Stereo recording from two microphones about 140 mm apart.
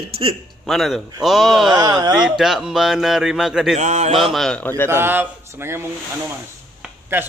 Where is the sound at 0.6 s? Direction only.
Centre (ahead or behind).